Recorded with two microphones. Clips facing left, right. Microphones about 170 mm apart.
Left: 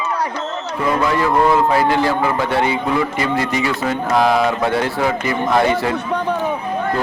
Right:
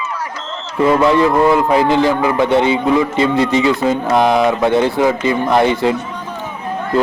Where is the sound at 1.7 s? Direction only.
20° right (ahead or behind).